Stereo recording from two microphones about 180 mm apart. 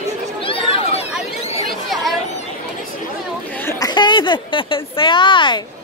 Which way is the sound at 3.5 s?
15° left (ahead or behind).